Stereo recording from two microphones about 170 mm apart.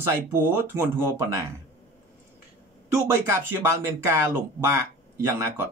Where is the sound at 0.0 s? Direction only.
15° right (ahead or behind).